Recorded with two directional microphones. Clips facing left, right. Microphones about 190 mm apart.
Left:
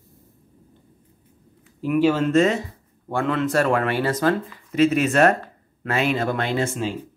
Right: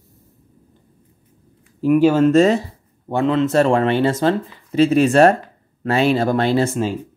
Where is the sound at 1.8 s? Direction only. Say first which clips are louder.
Right 6 dB; 45° right (ahead or behind).